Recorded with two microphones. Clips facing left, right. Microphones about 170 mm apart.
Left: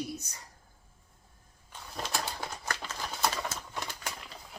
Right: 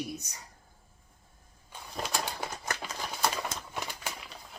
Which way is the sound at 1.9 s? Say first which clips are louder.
Right 1 dB; 5° right (ahead or behind).